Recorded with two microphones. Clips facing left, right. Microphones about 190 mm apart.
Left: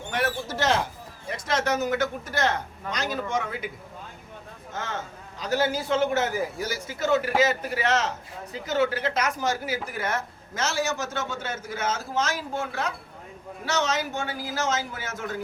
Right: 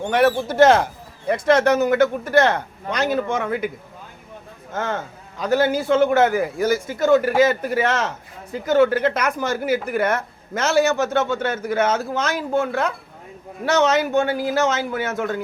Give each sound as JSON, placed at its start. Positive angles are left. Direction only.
{"t": 0.1, "sound": "speech", "side_deg": -70}
{"t": 4.7, "sound": "a man's voice", "side_deg": -55}